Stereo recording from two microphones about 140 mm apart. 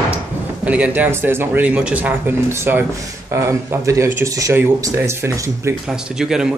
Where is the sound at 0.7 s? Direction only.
10° right (ahead or behind).